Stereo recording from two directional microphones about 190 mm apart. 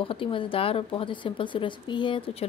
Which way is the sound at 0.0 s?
25° left (ahead or behind).